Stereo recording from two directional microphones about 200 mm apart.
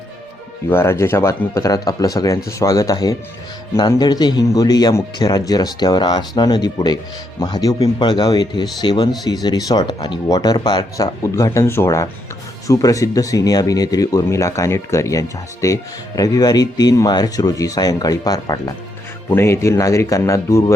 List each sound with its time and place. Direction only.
0.7 s speech: 10° left (ahead or behind)